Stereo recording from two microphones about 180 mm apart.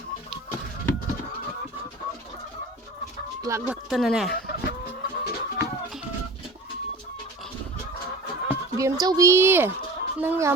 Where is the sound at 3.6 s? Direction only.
5° right (ahead or behind).